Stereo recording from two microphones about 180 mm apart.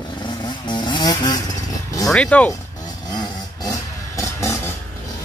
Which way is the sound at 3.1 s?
20° left (ahead or behind).